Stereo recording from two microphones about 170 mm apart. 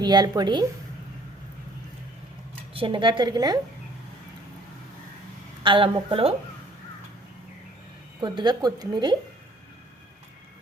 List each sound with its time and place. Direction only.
0.0 s speech: 25° right (ahead or behind)
2.7 s speech: 30° right (ahead or behind)
5.6 s a woman's voice: 30° right (ahead or behind)
8.2 s speech: 25° right (ahead or behind)